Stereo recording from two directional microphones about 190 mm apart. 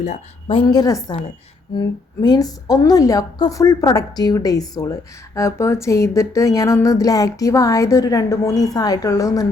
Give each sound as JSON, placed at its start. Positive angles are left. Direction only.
{"t": 0.0, "sound": "a woman's voice", "side_deg": 35}
{"t": 2.2, "sound": "a woman's voice", "side_deg": 20}